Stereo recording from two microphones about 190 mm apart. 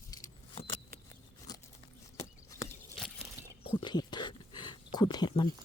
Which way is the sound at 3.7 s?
25° left (ahead or behind).